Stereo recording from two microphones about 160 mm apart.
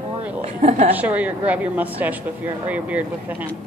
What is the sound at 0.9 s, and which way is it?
Speech, 10° right (ahead or behind).